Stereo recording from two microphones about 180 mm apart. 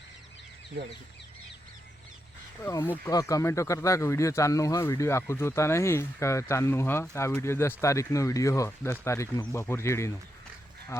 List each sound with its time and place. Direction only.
2.6 s speech: 15° left (ahead or behind)